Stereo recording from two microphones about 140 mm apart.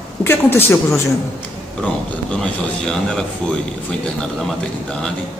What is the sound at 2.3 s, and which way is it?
Speech, 5° left (ahead or behind).